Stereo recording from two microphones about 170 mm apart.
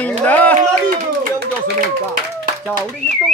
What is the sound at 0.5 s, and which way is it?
Speech, 55° right (ahead or behind).